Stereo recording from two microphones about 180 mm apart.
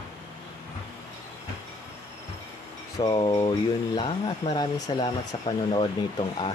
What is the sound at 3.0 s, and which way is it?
Speech, 25° left (ahead or behind).